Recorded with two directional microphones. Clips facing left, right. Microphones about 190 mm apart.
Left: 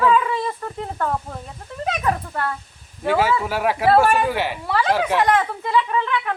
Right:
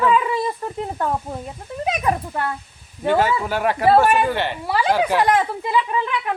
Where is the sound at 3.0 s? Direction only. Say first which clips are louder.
Right 1 dB; 5° left (ahead or behind).